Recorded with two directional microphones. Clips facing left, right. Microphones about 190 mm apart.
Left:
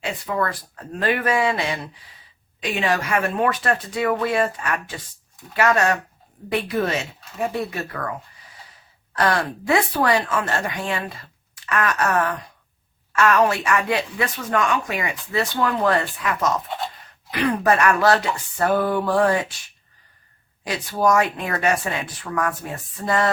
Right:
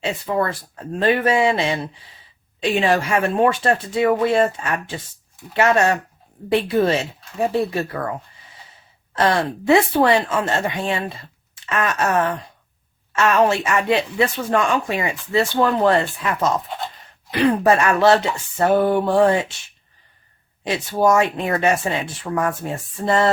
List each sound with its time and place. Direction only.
0.0 s speech: 25° right (ahead or behind)
9.1 s speech: 25° right (ahead or behind)
20.7 s speech: 25° right (ahead or behind)